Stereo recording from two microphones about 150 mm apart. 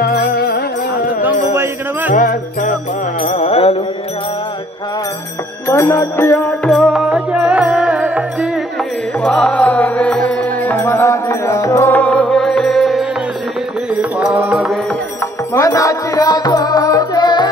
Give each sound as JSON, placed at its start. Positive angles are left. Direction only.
{"t": 0.0, "sound": "music", "side_deg": 90}
{"t": 1.5, "sound": "jingle bell", "side_deg": -15}
{"t": 2.1, "sound": "music", "side_deg": 60}
{"t": 3.2, "sound": "music", "side_deg": 45}
{"t": 5.7, "sound": "music", "side_deg": 20}
{"t": 6.7, "sound": "music", "side_deg": 0}
{"t": 9.2, "sound": "music", "side_deg": 5}
{"t": 15.5, "sound": "music", "side_deg": 20}